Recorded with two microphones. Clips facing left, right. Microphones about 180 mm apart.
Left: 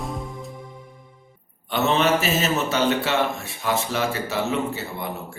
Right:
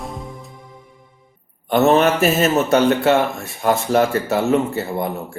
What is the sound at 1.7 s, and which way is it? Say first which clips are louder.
Speech: right 6 dB; 50° right (ahead or behind).